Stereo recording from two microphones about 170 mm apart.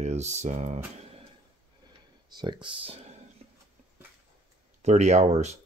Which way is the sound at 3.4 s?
40° right (ahead or behind).